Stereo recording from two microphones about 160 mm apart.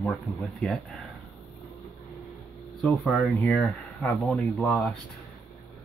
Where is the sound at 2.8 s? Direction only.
Centre (ahead or behind).